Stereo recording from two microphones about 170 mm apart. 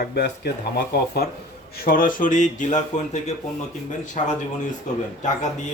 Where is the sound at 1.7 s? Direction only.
60° left (ahead or behind).